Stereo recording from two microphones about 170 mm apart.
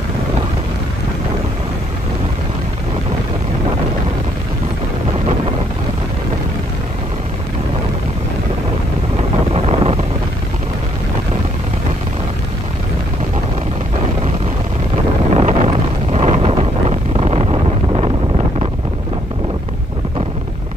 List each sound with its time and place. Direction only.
9.5 s vehicle: 35° right (ahead or behind)
15.3 s wind noise: 40° right (ahead or behind)